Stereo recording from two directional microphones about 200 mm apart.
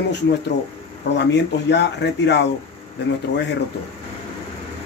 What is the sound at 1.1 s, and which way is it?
Speech, 60° left (ahead or behind).